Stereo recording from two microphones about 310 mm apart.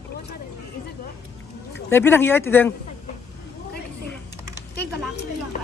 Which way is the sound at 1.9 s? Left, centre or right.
Centre.